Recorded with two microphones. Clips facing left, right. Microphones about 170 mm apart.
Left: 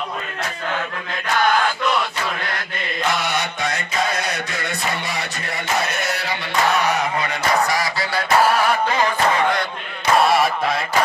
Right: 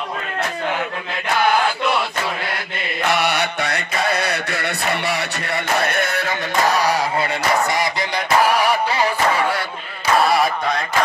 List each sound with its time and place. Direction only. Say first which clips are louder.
3.1 s mantra: right 4 dB; 65° right (ahead or behind)
6.7 s honk: right 1 dB; 35° right (ahead or behind)
8.5 s music: even; 10° right (ahead or behind)
10.1 s a sound: even; centre (ahead or behind)